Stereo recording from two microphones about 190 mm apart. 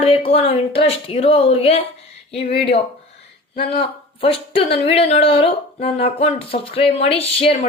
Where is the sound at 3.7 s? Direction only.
30° left (ahead or behind).